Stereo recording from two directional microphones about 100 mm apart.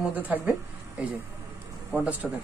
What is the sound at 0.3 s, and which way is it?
Speech, 15° right (ahead or behind).